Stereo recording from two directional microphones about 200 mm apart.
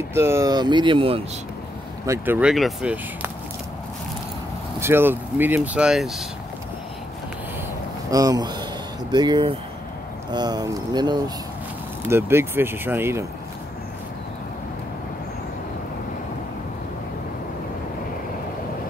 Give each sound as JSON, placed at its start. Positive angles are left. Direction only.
{"t": 0.1, "sound": "speech", "side_deg": -15}
{"t": 2.0, "sound": "speech", "side_deg": -10}
{"t": 4.7, "sound": "speech", "side_deg": -10}
{"t": 8.1, "sound": "speech", "side_deg": -20}